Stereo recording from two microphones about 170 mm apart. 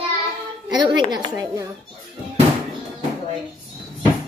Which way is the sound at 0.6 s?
25° right (ahead or behind).